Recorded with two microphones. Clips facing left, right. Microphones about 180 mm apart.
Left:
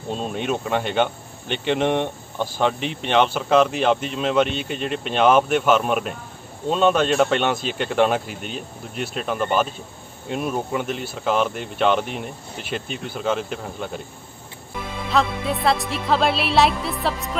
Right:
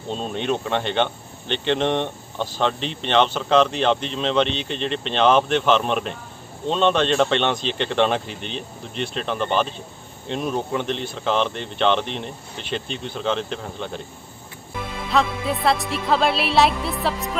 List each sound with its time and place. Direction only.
0.1 s speech: 5° left (ahead or behind)
15.0 s music: centre (ahead or behind)